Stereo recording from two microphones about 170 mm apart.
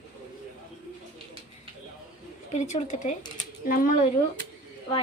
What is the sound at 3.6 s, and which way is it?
Speech, 55° left (ahead or behind).